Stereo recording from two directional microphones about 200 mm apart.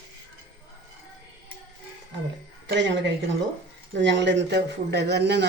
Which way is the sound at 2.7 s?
65° right (ahead or behind).